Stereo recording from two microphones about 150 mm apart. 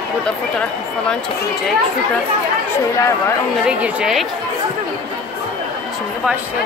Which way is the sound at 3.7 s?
5° right (ahead or behind).